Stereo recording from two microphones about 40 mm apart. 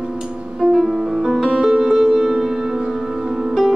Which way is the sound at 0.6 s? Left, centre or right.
Centre.